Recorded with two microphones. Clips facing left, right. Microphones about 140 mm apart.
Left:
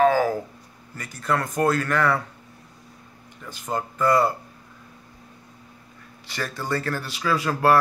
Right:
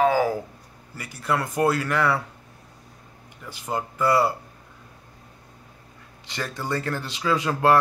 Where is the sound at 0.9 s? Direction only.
10° right (ahead or behind).